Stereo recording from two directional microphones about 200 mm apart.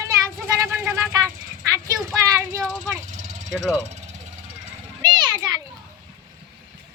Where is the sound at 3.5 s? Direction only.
Centre (ahead or behind).